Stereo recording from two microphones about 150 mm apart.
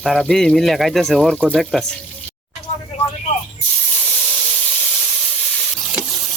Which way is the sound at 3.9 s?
10° left (ahead or behind).